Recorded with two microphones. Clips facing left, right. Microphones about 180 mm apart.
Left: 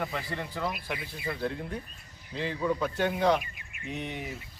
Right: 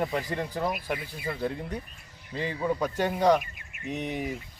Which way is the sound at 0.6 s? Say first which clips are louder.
Right 3 dB; 45° right (ahead or behind).